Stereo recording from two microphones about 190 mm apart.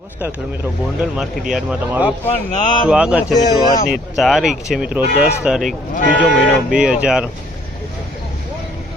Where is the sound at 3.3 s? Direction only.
20° left (ahead or behind).